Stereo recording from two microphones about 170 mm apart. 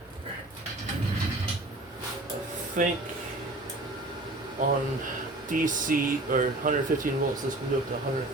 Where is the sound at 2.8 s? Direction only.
50° right (ahead or behind).